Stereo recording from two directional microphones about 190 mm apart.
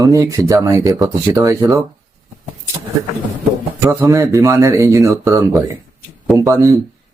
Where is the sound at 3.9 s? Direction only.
15° right (ahead or behind).